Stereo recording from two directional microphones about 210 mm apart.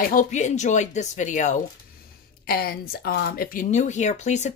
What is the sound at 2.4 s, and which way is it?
Speech, 45° left (ahead or behind).